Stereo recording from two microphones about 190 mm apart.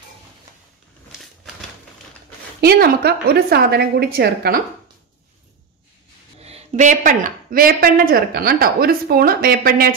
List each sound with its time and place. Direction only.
2.6 s a woman's voice: 55° right (ahead or behind)
6.4 s speech: 35° right (ahead or behind)